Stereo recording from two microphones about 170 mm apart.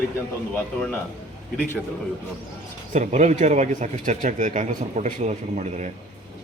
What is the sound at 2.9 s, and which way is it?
Speech, 45° right (ahead or behind).